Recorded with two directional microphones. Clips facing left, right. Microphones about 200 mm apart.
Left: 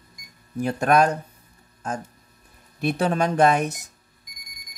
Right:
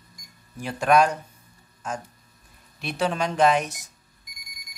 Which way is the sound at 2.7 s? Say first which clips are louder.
Left 4 dB; 45° left (ahead or behind).